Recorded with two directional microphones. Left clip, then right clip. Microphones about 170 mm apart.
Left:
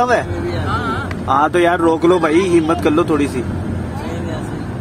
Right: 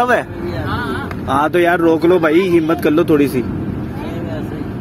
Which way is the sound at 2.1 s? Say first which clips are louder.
Right 1 dB; 15° right (ahead or behind).